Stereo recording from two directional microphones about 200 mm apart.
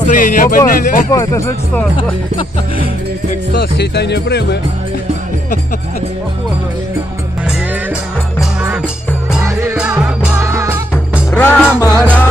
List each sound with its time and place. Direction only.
0.1 s speech: 40° left (ahead or behind)
1.1 s speech: 15° left (ahead or behind)
3.5 s speech: 55° left (ahead or behind)
9.6 s music: 10° right (ahead or behind)
11.3 s music: 10° left (ahead or behind)